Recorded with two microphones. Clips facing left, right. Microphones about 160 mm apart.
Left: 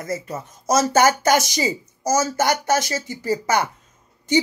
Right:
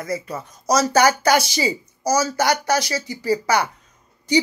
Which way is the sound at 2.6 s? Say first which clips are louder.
Even; 50° left (ahead or behind).